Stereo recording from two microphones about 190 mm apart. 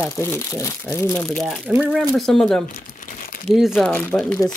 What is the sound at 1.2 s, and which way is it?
Speech, centre (ahead or behind).